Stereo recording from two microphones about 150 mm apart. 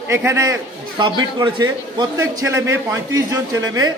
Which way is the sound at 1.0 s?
30° right (ahead or behind).